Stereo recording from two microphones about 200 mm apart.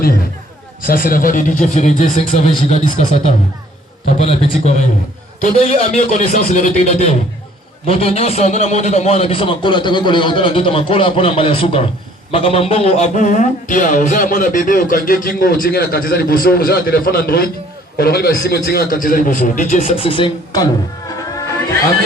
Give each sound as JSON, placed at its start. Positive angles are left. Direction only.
{"t": 0.8, "sound": "a man's voice", "side_deg": 45}
{"t": 21.3, "sound": "music", "side_deg": 15}